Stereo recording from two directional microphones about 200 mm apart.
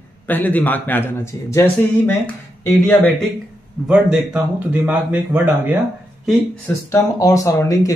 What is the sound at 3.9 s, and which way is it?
A man's voice, 5° right (ahead or behind).